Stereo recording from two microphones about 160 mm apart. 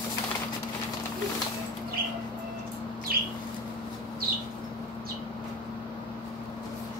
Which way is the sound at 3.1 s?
70° right (ahead or behind).